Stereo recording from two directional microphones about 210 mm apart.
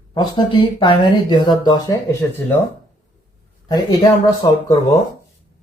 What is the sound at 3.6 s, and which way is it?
Speech, 20° left (ahead or behind).